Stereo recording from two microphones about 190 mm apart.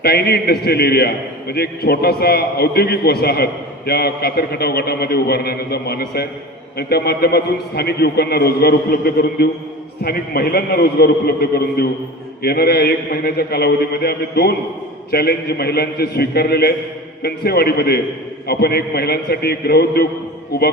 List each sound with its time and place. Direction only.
0.0 s a man's voice: 55° left (ahead or behind)